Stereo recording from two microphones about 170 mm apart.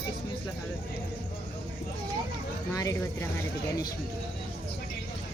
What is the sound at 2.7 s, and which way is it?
Speech, 20° left (ahead or behind).